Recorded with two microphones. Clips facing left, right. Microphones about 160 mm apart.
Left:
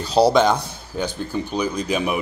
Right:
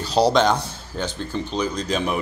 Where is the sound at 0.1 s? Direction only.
10° left (ahead or behind).